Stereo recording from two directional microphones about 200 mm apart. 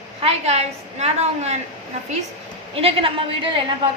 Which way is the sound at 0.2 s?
30° right (ahead or behind).